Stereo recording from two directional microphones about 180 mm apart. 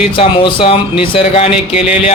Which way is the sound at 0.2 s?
30° left (ahead or behind).